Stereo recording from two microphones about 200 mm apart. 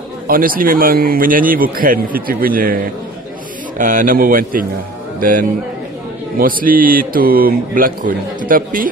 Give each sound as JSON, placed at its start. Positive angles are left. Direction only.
{"t": 0.3, "sound": "speech", "side_deg": -45}